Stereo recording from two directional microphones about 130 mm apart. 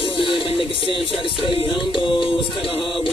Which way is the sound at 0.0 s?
45° left (ahead or behind).